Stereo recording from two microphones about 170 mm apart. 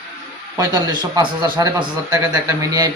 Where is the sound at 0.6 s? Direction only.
20° right (ahead or behind).